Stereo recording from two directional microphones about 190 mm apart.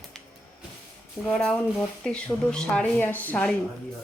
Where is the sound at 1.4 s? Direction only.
5° left (ahead or behind).